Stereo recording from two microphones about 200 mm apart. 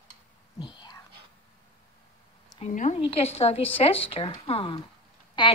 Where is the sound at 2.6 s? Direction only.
35° left (ahead or behind).